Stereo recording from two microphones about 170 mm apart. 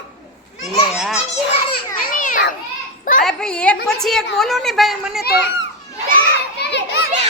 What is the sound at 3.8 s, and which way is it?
A woman's voice, centre (ahead or behind).